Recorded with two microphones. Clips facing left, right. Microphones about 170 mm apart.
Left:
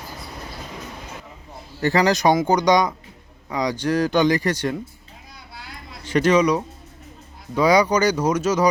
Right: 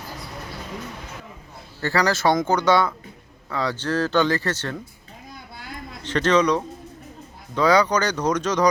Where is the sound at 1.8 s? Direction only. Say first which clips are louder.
Left 3 dB; 20° left (ahead or behind).